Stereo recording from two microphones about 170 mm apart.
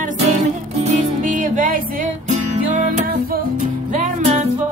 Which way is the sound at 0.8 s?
45° right (ahead or behind).